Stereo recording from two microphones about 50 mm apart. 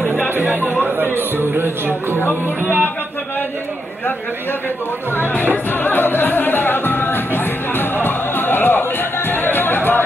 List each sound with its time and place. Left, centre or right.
0.3 s speech: right
2.1 s speech: left
2.6 s speech: right
5.1 s speech: left
5.7 s music: left